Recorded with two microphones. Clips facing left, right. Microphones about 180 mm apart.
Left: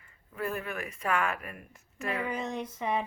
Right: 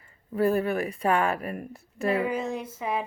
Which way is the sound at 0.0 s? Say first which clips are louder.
Right 11 dB; 35° right (ahead or behind).